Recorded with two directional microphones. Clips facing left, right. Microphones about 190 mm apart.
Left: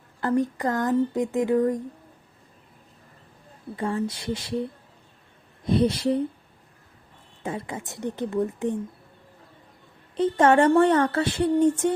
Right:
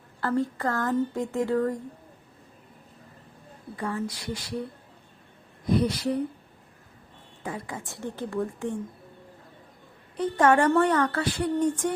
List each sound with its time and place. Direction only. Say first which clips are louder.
0.2 s speech: left 3 dB; 20° left (ahead or behind)
3.8 s speech: left 4 dB; 25° left (ahead or behind)
5.6 s speech: left 3 dB; 25° left (ahead or behind)
7.4 s speech: left 3 dB; 20° left (ahead or behind)
10.2 s speech: left 3 dB; 25° left (ahead or behind)